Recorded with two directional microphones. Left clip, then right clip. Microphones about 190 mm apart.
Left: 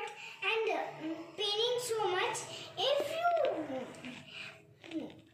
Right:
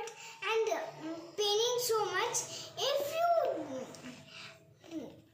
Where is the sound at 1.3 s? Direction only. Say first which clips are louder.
Right 2 dB; 15° right (ahead or behind).